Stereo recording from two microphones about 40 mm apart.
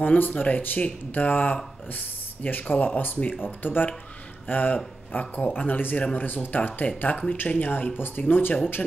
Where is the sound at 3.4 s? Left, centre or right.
Left.